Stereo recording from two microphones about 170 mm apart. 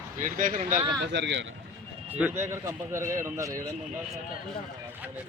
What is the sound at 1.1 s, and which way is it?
Speech, 90° right.